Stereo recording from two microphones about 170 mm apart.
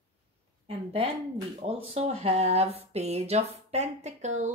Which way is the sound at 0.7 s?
35° right (ahead or behind).